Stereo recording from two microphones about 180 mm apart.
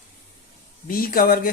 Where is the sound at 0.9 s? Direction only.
55° left (ahead or behind).